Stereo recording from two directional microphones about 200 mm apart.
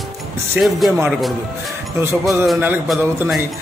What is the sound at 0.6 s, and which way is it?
A man's voice, centre (ahead or behind).